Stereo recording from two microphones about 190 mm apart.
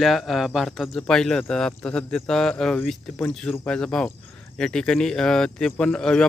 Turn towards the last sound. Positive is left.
turn(degrees=5)  # may be behind; listen again after turning